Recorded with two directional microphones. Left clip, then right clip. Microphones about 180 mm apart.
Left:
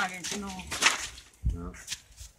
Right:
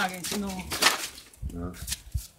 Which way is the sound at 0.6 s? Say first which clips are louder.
Right 2 dB; 30° left (ahead or behind).